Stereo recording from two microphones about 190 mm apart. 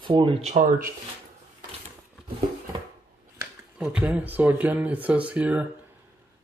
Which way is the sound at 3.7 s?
5° right (ahead or behind).